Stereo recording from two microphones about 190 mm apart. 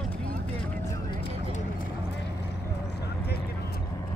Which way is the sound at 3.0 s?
60° left (ahead or behind).